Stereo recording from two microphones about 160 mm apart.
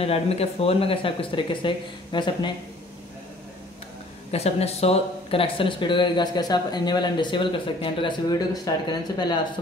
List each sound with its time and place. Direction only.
0.0 s speech: 40° left (ahead or behind)
4.3 s speech: 40° left (ahead or behind)